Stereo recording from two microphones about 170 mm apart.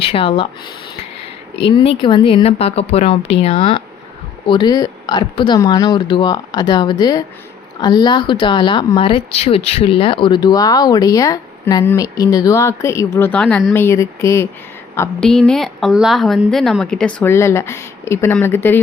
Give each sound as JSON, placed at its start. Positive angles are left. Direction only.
{"t": 0.0, "sound": "speech", "side_deg": 35}
{"t": 1.5, "sound": "speech", "side_deg": 35}
{"t": 13.7, "sound": "speech", "side_deg": 15}
{"t": 15.2, "sound": "a woman's voice", "side_deg": 5}